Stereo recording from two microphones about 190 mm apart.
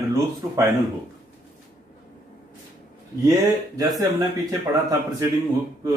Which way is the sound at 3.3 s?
20° right (ahead or behind).